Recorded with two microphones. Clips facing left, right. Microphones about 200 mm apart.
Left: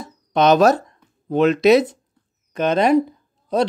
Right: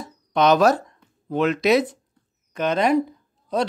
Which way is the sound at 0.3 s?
25° left (ahead or behind).